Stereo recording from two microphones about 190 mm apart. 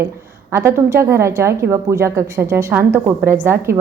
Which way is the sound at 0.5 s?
15° right (ahead or behind).